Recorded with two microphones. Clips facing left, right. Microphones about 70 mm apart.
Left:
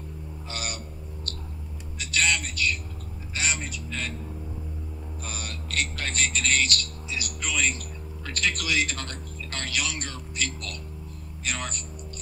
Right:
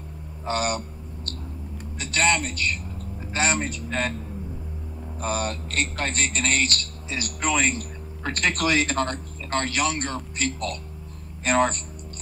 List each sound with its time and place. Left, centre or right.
0.5 s a man's voice: right
5.2 s a man's voice: right